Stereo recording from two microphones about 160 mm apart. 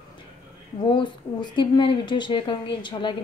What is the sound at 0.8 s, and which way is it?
A woman's voice, 30° left (ahead or behind).